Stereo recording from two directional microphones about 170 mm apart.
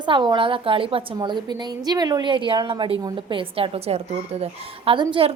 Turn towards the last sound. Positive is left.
turn(degrees=-30)  # may be behind; listen again after turning